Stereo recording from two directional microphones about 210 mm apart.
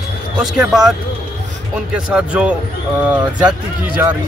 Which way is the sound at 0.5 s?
Centre (ahead or behind).